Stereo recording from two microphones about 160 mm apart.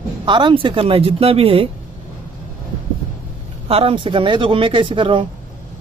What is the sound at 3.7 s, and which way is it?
Speech, 35° right (ahead or behind).